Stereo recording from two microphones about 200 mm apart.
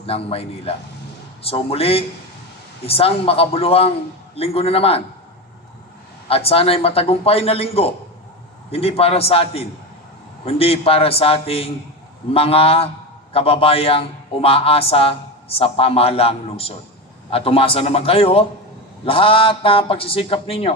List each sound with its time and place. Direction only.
0.0 s a man's voice: 30° left (ahead or behind)
6.2 s a man's voice: 30° left (ahead or behind)